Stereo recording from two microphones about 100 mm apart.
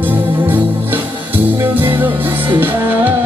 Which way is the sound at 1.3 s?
20° right (ahead or behind).